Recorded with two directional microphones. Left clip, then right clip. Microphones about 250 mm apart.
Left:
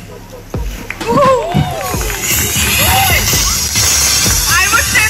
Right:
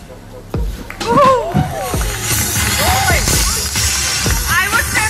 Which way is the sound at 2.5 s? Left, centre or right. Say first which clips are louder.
Left 3 dB; left.